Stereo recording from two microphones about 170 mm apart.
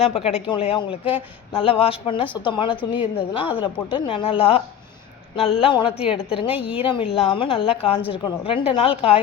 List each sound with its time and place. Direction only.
0.0 s a woman's voice: 35° left (ahead or behind)